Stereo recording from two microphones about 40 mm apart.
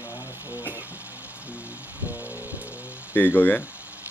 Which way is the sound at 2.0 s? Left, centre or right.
Right.